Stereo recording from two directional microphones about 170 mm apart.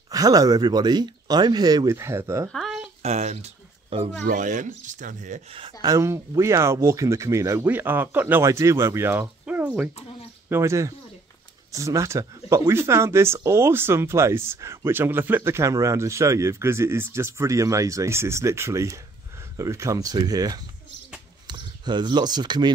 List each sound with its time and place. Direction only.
0.1 s speech: 20° right (ahead or behind)
2.5 s a sound: centre (ahead or behind)
3.0 s a sound: 40° right (ahead or behind)
4.3 s speech: 50° right (ahead or behind)
5.5 s speech: 35° right (ahead or behind)
5.9 s speech: 15° right (ahead or behind)